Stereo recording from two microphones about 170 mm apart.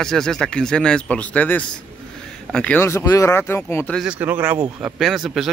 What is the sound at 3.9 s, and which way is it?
Speech, 5° right (ahead or behind).